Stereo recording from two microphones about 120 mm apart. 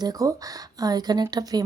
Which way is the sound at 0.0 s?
30° right (ahead or behind).